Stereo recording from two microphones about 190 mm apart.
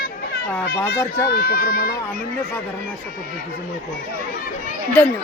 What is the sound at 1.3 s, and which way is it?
Speech, 50° left (ahead or behind).